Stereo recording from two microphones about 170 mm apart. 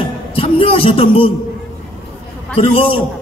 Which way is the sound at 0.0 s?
30° left (ahead or behind).